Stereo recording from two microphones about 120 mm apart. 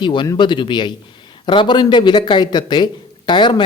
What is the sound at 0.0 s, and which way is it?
Speech, 40° left (ahead or behind).